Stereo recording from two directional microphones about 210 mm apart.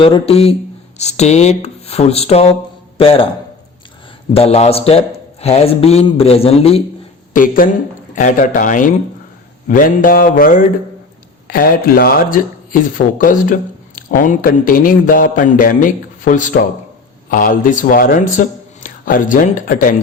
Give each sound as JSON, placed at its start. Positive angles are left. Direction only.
{"t": 0.0, "sound": "a man's voice", "side_deg": 25}
{"t": 4.4, "sound": "a man's voice", "side_deg": 30}
{"t": 7.3, "sound": "a man's voice", "side_deg": 40}